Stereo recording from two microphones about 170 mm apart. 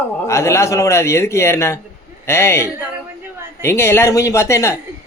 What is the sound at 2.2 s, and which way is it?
Speech, 15° left (ahead or behind).